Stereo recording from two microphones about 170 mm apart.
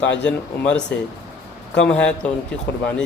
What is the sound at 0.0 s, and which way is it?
Speech, 90° left.